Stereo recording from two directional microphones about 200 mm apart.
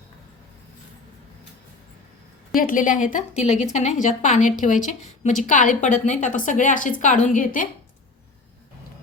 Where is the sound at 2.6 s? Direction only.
40° left (ahead or behind).